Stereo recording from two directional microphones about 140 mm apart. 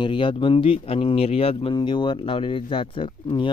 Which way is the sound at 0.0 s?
35° left (ahead or behind).